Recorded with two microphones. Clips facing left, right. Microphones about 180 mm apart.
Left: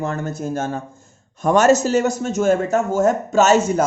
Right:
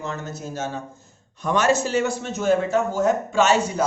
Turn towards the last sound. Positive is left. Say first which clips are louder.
# left 5 dB
turn(degrees=45)  # may be behind; listen again after turning